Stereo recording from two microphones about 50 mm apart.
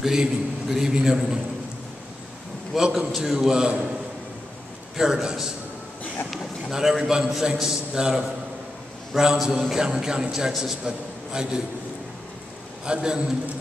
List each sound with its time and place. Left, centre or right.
0.0 s a man's voice: centre
2.7 s a man's voice: centre
4.9 s a man's voice: centre
6.3 s a sound: centre
7.1 s a man's voice: centre
12.8 s a man's voice: centre